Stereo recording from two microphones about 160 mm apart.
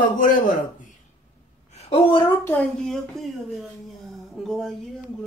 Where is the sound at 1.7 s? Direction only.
40° left (ahead or behind).